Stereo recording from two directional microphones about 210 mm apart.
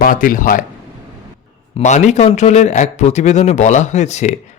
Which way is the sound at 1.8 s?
35° left (ahead or behind).